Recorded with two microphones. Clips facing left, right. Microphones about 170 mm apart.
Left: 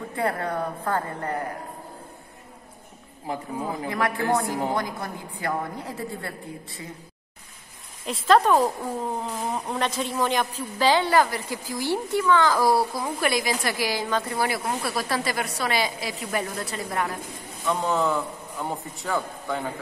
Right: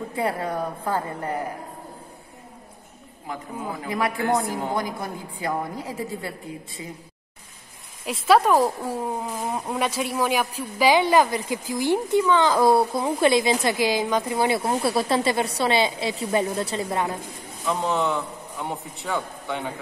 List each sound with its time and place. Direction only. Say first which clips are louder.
0.1 s a woman's voice: even; 10° right (ahead or behind)
3.9 s a woman's voice: right 2 dB; 15° right (ahead or behind)
8.0 s a woman's voice: right 1 dB; 10° right (ahead or behind)
17.6 s a man's voice: even; centre (ahead or behind)